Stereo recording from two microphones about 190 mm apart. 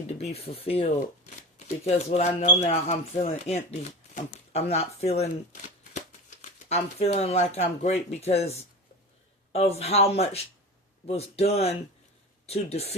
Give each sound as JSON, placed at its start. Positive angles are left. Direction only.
{"t": 0.1, "sound": "speech", "side_deg": 35}